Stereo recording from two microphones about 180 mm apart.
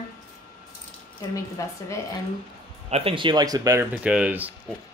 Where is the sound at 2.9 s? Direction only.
30° right (ahead or behind).